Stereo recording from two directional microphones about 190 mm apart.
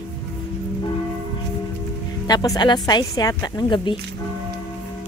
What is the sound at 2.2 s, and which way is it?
Speech, 20° left (ahead or behind).